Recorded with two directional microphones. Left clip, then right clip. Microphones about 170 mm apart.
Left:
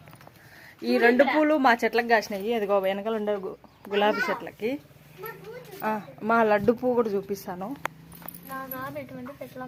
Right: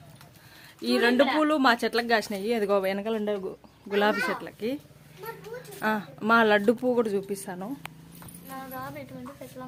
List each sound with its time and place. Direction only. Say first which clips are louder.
0.9 s a woman's voice: left 2 dB; 15° right (ahead or behind)
4.3 s speech: left 2 dB; 20° right (ahead or behind)
5.8 s a woman's voice: right 1 dB; 30° right (ahead or behind); by 7.7 s 10° right (ahead or behind)